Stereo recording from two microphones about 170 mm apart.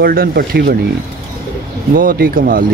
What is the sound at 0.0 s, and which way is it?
Speech, 60° right (ahead or behind).